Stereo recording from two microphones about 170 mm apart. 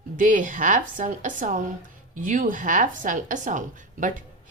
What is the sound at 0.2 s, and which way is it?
A woman's voice, 50° right (ahead or behind).